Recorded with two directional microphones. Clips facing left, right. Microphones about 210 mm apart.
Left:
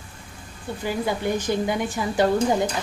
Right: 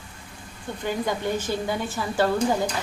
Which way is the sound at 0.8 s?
10° left (ahead or behind).